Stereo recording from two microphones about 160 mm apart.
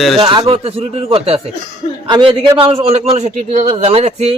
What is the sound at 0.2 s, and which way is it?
A man's voice, 35° right (ahead or behind).